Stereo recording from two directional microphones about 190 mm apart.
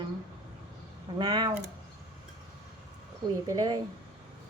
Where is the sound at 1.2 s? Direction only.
20° right (ahead or behind).